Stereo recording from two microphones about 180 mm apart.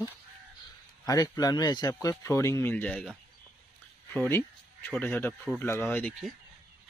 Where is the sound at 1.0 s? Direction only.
20° left (ahead or behind).